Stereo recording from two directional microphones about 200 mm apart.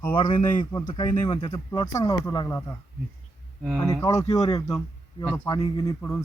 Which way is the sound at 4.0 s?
15° left (ahead or behind).